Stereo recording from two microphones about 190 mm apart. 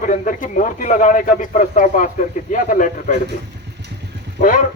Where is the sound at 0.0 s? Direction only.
45° left (ahead or behind).